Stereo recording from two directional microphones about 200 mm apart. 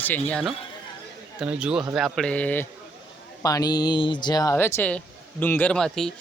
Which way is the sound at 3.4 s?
20° left (ahead or behind).